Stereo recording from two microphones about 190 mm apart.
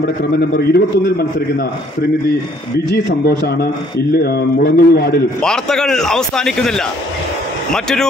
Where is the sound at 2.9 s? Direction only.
55° left (ahead or behind).